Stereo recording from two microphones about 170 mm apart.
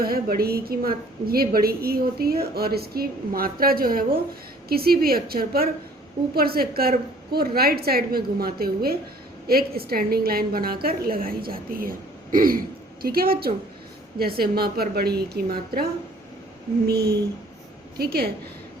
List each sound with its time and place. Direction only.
0.0 s a woman's voice: 60° right (ahead or behind)